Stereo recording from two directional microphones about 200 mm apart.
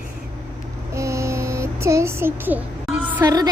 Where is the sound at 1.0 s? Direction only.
15° right (ahead or behind).